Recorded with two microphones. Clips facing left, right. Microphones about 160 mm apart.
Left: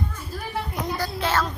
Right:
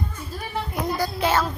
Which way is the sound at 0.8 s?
10° right (ahead or behind).